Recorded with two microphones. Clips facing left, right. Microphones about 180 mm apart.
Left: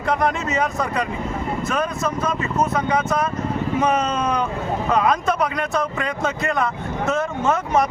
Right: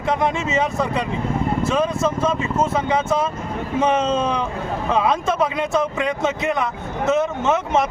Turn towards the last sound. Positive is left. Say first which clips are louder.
# even
turn(degrees=-20)  # may be behind; listen again after turning